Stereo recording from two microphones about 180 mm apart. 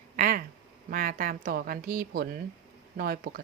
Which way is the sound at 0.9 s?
50° right (ahead or behind).